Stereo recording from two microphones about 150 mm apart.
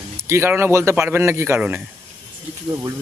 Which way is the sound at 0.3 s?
15° right (ahead or behind).